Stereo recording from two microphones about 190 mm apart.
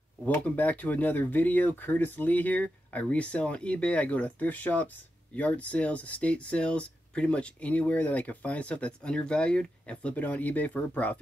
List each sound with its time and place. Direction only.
0.2 s speech: 10° left (ahead or behind)